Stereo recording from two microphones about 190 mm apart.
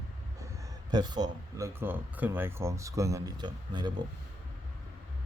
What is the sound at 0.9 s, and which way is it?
Speech, 20° right (ahead or behind).